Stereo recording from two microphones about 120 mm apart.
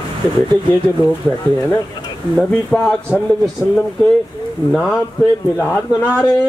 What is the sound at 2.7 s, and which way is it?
Speech, 5° left (ahead or behind).